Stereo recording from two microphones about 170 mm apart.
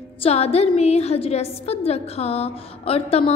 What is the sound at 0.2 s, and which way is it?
A woman's voice, 35° left (ahead or behind).